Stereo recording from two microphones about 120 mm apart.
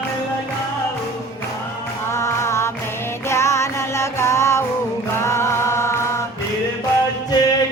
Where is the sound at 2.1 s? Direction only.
25° left (ahead or behind).